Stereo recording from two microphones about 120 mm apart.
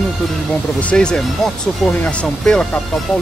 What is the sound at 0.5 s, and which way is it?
Speech, 10° left (ahead or behind).